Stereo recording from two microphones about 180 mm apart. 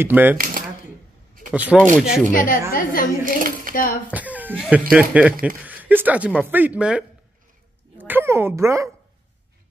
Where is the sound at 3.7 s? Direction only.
50° left (ahead or behind).